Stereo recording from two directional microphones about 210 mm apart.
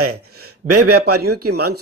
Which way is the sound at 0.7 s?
90° right.